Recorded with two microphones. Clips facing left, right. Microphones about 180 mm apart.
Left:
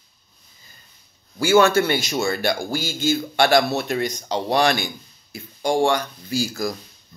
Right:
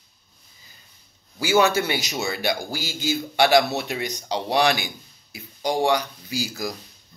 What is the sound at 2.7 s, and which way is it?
Speech, 50° left (ahead or behind).